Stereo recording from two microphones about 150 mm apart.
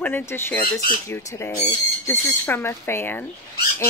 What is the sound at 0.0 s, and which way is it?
Speech, 15° left (ahead or behind).